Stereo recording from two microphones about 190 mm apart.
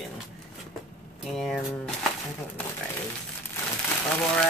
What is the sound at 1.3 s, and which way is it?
Speech, centre (ahead or behind).